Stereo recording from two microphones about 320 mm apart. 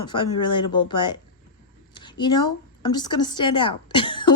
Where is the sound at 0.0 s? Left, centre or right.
Centre.